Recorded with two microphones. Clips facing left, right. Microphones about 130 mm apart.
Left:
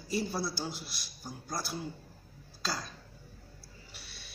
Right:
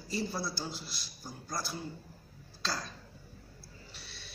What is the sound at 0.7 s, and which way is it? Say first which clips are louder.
Speech: even; 60° left (ahead or behind).